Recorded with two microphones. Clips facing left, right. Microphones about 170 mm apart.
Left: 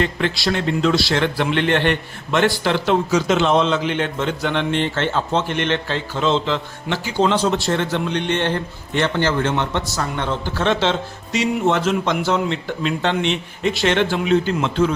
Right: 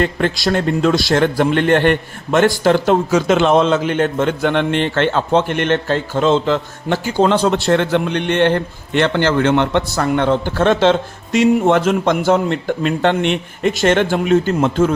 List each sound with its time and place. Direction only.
0.0 s a man's voice: 45° right (ahead or behind)